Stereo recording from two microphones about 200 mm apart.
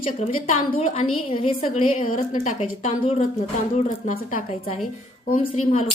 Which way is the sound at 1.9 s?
40° left (ahead or behind).